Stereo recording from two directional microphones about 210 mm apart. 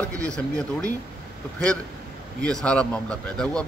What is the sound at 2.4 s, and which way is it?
Speech, 5° left (ahead or behind).